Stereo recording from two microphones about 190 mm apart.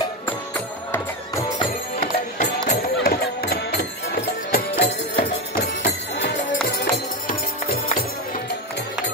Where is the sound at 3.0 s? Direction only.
55° left (ahead or behind).